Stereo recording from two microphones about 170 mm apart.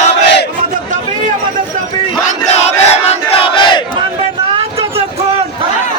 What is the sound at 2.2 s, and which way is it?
Crowd, 40° left (ahead or behind).